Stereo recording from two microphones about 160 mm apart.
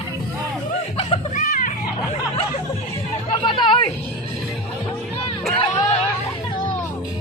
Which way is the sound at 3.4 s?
30° left (ahead or behind).